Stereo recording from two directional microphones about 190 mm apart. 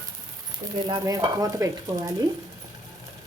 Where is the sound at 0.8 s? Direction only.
20° right (ahead or behind).